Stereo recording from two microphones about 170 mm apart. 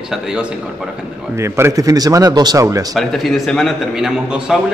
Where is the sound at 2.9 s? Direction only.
Centre (ahead or behind).